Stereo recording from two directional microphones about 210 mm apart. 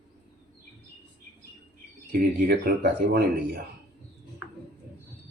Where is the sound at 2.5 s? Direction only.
50° right (ahead or behind).